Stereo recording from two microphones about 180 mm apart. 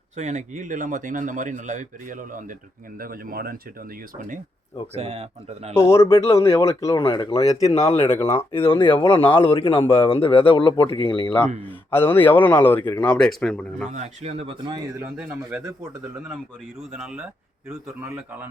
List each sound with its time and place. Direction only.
0.2 s speech: 40° right (ahead or behind)
4.9 s speech: 35° right (ahead or behind)
5.7 s a man's voice: 15° left (ahead or behind)
7.0 s speech: 30° left (ahead or behind)
8.0 s a man's voice: 15° left (ahead or behind)
8.7 s speech: 25° left (ahead or behind)
11.4 s a man's voice: 10° left (ahead or behind)
13.9 s speech: 40° right (ahead or behind)
14.9 s speech: 10° right (ahead or behind)
16.9 s speech: 5° right (ahead or behind)